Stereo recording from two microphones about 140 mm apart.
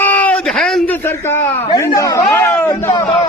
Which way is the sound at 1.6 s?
25° left (ahead or behind).